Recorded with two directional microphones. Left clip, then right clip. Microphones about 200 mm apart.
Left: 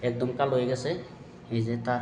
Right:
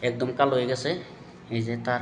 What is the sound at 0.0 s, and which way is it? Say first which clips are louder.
Speech: right 4 dB; 5° right (ahead or behind).